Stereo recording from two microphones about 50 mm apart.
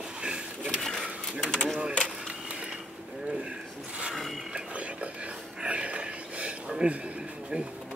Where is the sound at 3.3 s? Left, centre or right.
Right.